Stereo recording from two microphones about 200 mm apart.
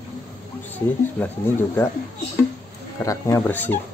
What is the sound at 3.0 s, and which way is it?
Speech, 15° left (ahead or behind).